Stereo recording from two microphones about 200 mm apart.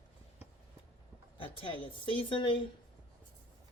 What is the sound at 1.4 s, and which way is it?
A woman's voice, 25° left (ahead or behind).